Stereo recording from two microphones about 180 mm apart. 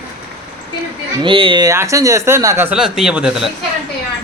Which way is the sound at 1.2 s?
30° right (ahead or behind).